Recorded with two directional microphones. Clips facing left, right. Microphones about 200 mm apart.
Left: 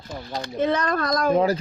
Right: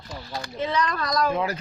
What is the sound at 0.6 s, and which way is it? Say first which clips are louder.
Speech: left 4 dB; 50° left (ahead or behind).